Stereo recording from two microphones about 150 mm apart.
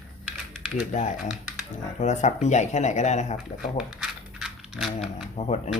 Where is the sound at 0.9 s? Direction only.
55° left (ahead or behind).